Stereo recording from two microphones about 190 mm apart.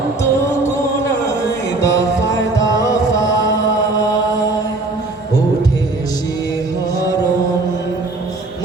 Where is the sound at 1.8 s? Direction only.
15° left (ahead or behind).